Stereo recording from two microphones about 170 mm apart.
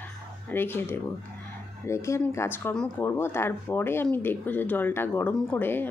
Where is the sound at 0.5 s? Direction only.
10° left (ahead or behind).